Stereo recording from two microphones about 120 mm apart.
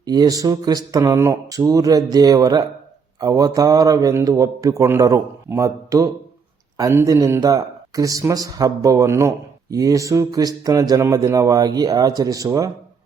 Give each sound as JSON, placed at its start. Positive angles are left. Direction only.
{"t": 0.0, "sound": "speech", "side_deg": -35}